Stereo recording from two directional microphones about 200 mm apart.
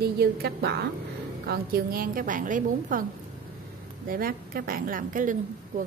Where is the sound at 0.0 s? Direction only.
50° right (ahead or behind).